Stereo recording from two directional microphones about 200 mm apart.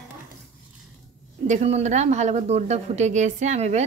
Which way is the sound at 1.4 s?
35° right (ahead or behind).